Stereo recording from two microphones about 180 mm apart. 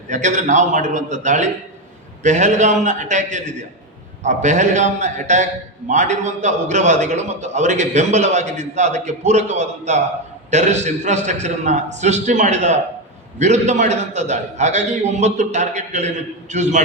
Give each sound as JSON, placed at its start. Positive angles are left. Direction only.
{"t": 0.1, "sound": "a man's voice", "side_deg": -40}